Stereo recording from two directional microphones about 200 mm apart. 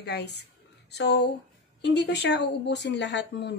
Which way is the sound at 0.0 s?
55° left (ahead or behind).